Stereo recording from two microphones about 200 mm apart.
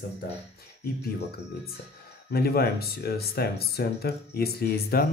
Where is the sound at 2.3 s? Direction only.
50° left (ahead or behind).